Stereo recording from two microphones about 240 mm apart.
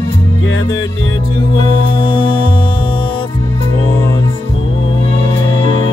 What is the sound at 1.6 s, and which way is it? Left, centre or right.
Music, centre.